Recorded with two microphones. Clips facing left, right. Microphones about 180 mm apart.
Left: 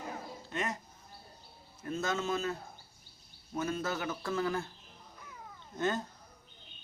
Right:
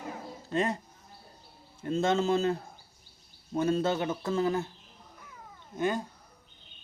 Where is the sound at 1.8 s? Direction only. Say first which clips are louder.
Right 7 dB; 25° right (ahead or behind).